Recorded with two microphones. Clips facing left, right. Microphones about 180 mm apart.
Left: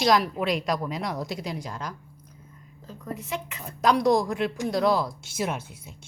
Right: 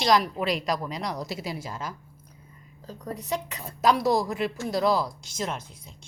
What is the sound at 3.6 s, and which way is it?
A woman's voice, centre (ahead or behind).